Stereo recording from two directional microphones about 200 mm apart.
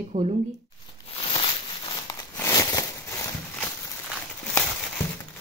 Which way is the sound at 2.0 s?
15° left (ahead or behind).